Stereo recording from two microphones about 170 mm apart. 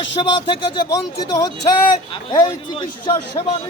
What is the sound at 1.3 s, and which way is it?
A man's voice, 20° left (ahead or behind).